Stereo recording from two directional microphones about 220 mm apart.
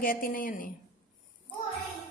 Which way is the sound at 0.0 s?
40° left (ahead or behind).